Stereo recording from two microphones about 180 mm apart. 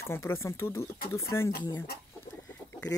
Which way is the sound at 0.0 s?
15° left (ahead or behind).